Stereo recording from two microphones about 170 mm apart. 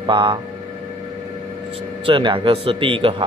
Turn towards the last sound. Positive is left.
turn(degrees=-30)  # may be behind; listen again after turning